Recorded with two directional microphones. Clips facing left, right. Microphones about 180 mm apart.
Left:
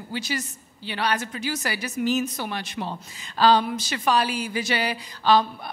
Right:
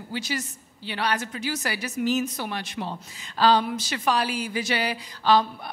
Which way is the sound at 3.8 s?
5° right (ahead or behind).